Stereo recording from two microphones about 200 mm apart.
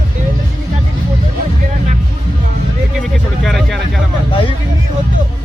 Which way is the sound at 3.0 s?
Centre (ahead or behind).